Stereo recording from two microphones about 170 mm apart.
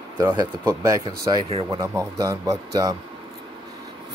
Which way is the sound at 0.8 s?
20° right (ahead or behind).